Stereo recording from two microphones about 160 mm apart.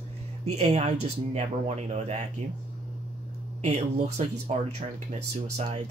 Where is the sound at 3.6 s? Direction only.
45° right (ahead or behind).